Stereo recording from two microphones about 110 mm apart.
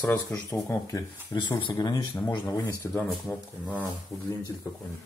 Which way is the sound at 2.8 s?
20° left (ahead or behind).